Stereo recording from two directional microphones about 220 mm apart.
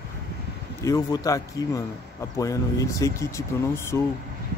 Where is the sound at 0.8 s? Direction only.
15° left (ahead or behind).